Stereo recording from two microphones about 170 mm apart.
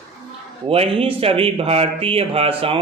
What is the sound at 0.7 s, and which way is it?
Speech, 35° right (ahead or behind).